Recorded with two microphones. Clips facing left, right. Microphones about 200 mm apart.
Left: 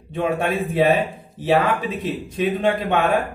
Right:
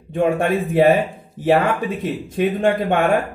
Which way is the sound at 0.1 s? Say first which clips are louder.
Right 4 dB; 50° right (ahead or behind).